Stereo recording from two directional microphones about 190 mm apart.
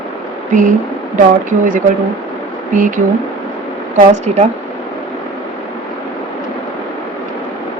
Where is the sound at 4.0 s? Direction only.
35° right (ahead or behind).